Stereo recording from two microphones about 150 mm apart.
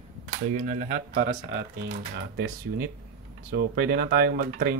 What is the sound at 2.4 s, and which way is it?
Speech, 80° right.